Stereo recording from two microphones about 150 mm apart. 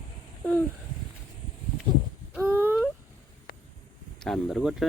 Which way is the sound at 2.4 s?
15° right (ahead or behind).